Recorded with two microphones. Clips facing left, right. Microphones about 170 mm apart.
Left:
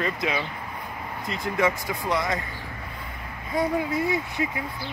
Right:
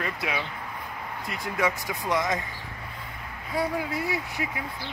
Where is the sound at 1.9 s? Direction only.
15° right (ahead or behind).